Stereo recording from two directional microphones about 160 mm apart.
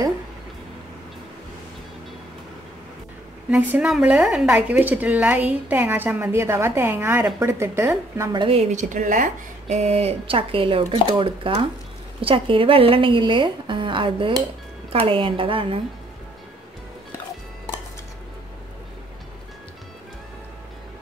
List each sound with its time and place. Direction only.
3.4 s speech: 10° right (ahead or behind)
8.4 s speech: 35° right (ahead or behind)
8.7 s speech: 55° right (ahead or behind); by 15.8 s 35° right (ahead or behind)